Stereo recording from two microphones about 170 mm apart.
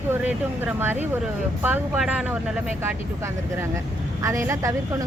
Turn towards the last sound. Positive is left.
turn(degrees=-15)  # may be behind; listen again after turning